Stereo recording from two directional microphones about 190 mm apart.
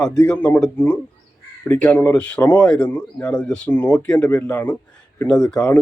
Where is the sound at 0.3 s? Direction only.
10° left (ahead or behind).